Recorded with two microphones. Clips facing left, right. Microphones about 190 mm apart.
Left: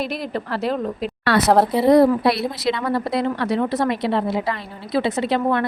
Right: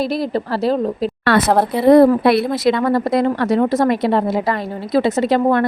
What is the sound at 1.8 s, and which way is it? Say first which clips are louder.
A woman's voice: right 7 dB; 55° right (ahead or behind).